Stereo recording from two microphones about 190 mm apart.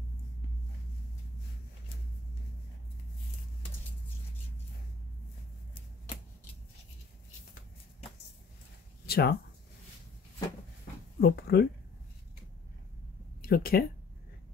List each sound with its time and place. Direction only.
9.0 s speech: 55° left (ahead or behind)
11.1 s speech: 55° left (ahead or behind)
13.4 s speech: 50° left (ahead or behind)